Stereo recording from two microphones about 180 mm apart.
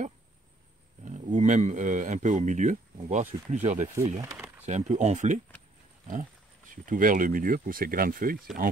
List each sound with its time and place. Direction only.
1.0 s speech: 45° right (ahead or behind)
4.2 s a sound: 15° right (ahead or behind)
4.6 s speech: 40° right (ahead or behind)
6.7 s speech: 50° right (ahead or behind)